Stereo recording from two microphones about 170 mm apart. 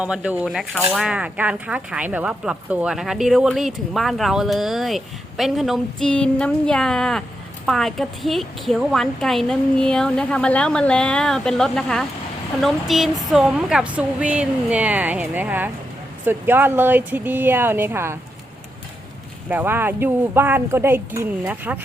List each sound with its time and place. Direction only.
0.0 s speech: 5° right (ahead or behind)
19.5 s speech: 10° right (ahead or behind)